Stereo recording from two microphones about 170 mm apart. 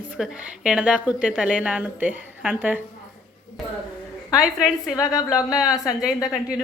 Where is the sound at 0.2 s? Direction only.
5° right (ahead or behind).